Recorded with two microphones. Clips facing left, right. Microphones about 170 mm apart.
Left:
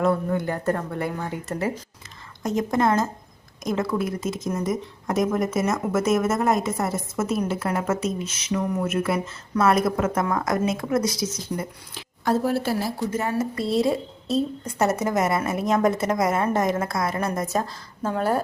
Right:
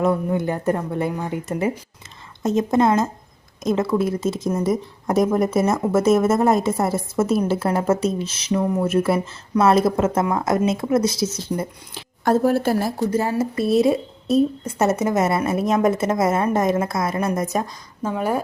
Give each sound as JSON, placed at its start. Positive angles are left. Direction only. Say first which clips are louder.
{"t": 0.0, "sound": "a woman's voice", "louder": "right 2 dB", "side_deg": -20}
{"t": 12.2, "sound": "speech", "louder": "right 5 dB", "side_deg": -50}
{"t": 13.1, "sound": "a woman's voice", "louder": "right 3 dB", "side_deg": -30}